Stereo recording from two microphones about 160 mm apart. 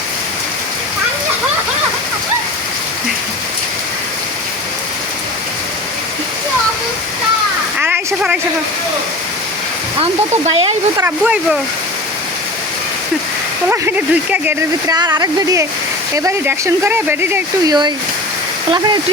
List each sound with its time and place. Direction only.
7.8 s a sound: 10° right (ahead or behind)
10.0 s speech: 35° right (ahead or behind)
10.9 s speech: 10° right (ahead or behind)
13.7 s speech: 10° right (ahead or behind)
14.8 s speech: 25° right (ahead or behind)